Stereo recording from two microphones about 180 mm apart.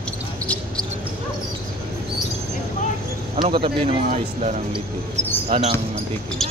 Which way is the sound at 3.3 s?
30° right (ahead or behind).